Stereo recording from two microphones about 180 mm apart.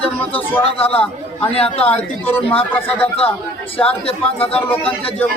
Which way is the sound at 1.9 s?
10° left (ahead or behind).